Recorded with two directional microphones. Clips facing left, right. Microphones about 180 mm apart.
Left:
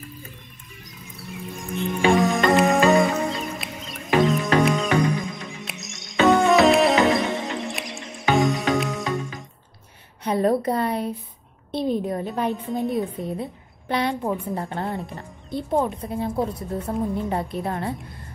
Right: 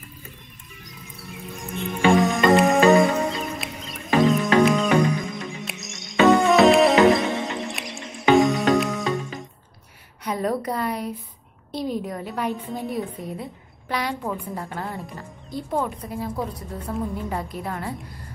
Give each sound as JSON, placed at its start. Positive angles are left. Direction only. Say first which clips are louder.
{"t": 0.8, "sound": "music", "louder": "left 2 dB", "side_deg": 0}
{"t": 10.2, "sound": "a woman's voice", "louder": "left 4 dB", "side_deg": 30}